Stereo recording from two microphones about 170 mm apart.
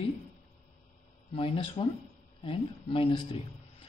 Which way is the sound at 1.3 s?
30° left (ahead or behind).